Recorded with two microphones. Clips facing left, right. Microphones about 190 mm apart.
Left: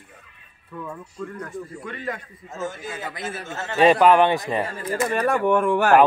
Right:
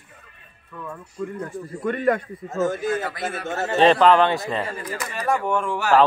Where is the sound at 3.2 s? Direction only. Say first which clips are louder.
Right 5 dB; 60° right (ahead or behind).